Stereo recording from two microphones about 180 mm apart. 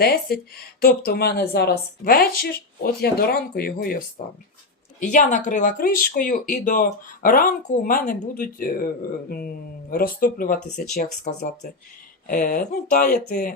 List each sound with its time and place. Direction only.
0.0 s speech: 60° left (ahead or behind)
9.9 s speech: 55° left (ahead or behind)
11.3 s speech: 40° left (ahead or behind)